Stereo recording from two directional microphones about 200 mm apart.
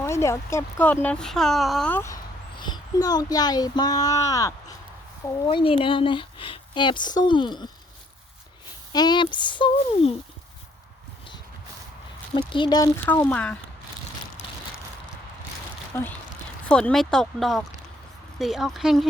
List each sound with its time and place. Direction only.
0.0 s speech: 15° left (ahead or behind)
2.6 s speech: 20° left (ahead or behind)
8.9 s speech: 20° left (ahead or behind)
12.5 s speech: 25° left (ahead or behind)
13.1 s speech: 10° left (ahead or behind)
15.9 s speech: 10° left (ahead or behind)